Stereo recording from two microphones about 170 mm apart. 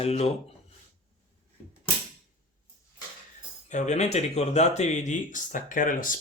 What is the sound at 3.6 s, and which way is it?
Speech, 45° left (ahead or behind).